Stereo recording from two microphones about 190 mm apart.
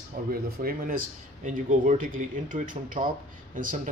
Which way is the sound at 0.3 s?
50° right (ahead or behind).